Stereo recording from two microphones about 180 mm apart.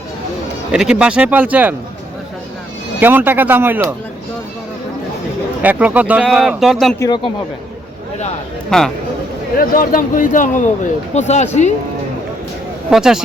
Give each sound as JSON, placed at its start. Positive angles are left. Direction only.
{"t": 0.7, "sound": "speech", "side_deg": -5}
{"t": 3.0, "sound": "speech", "side_deg": -10}
{"t": 5.6, "sound": "speech", "side_deg": -10}
{"t": 8.7, "sound": "speech", "side_deg": 5}
{"t": 9.6, "sound": "a man's voice", "side_deg": 50}
{"t": 12.9, "sound": "speech", "side_deg": -5}